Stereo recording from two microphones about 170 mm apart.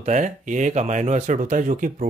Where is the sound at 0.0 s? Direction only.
45° right (ahead or behind).